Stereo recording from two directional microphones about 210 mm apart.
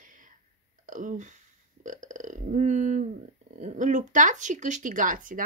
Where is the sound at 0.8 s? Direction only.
40° right (ahead or behind).